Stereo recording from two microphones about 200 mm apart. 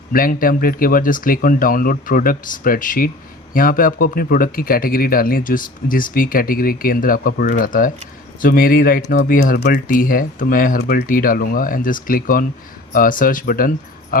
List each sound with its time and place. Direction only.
0.1 s a man's voice: 45° left (ahead or behind)